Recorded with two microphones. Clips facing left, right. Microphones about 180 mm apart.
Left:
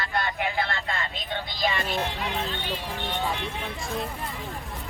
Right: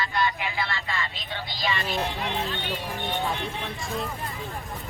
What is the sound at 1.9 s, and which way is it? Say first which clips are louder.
Speech: even; centre (ahead or behind).